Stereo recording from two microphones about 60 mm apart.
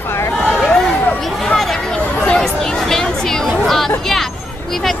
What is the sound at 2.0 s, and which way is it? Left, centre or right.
Chatter, centre.